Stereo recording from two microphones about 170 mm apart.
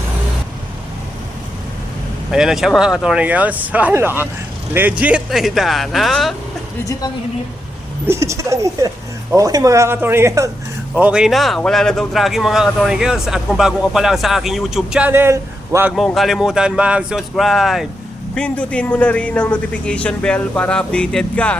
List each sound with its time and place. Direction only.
2.3 s speech: 5° right (ahead or behind)
8.0 s speech: 15° right (ahead or behind)
16.0 s speech: centre (ahead or behind)